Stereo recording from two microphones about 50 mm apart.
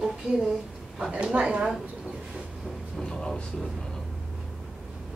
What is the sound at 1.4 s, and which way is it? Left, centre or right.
Speech, centre.